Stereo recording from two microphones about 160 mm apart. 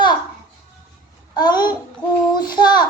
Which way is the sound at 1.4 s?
25° left (ahead or behind).